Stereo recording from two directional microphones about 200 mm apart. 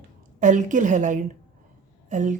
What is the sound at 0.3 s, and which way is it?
A woman's voice, 40° right (ahead or behind).